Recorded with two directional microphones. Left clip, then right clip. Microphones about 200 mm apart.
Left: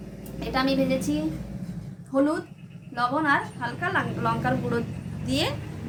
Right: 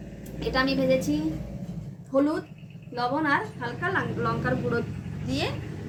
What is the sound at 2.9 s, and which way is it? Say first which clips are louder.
A woman's voice: left 2 dB; 20° left (ahead or behind).